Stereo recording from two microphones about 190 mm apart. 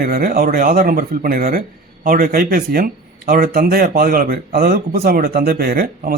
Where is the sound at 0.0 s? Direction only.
55° right (ahead or behind).